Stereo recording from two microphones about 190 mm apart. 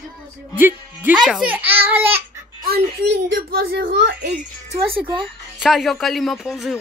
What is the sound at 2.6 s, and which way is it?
A child's voice, 55° right (ahead or behind).